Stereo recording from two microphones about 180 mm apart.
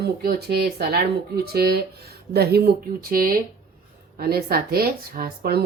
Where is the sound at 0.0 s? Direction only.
60° right (ahead or behind).